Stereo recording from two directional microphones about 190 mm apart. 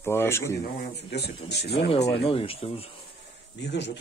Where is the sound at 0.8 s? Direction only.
60° left (ahead or behind).